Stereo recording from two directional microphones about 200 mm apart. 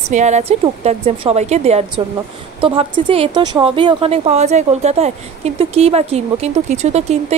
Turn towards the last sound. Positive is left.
turn(degrees=-35)  # may be behind; listen again after turning